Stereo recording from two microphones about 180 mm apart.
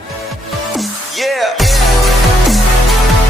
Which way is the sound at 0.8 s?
Centre (ahead or behind).